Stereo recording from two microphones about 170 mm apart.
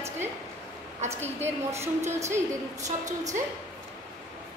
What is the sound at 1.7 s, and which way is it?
Speech, 15° right (ahead or behind).